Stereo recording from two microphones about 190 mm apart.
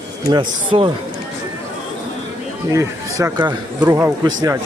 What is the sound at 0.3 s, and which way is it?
Speech, 25° right (ahead or behind).